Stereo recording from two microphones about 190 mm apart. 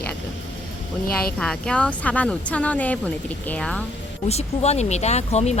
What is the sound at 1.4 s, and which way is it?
Speech, 5° left (ahead or behind).